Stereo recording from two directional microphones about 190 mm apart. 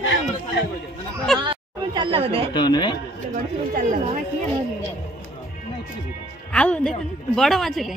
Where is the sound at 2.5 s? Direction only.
25° left (ahead or behind).